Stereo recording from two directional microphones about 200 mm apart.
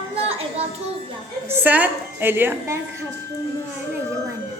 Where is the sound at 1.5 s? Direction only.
10° right (ahead or behind).